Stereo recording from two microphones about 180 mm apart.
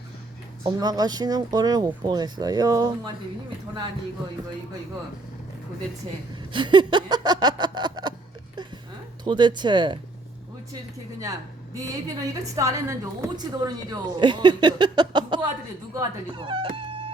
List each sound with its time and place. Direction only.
0.6 s a woman's voice: 20° right (ahead or behind)
6.5 s a sound: 25° right (ahead or behind)
9.2 s a woman's voice: 25° right (ahead or behind)
11.2 s a woman's voice: 20° right (ahead or behind)